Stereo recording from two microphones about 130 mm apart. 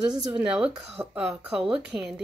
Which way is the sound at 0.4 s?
5° right (ahead or behind).